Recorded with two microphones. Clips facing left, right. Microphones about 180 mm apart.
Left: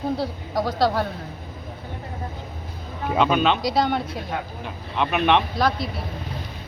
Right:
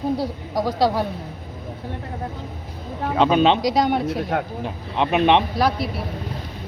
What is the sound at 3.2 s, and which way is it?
Speech, 30° right (ahead or behind).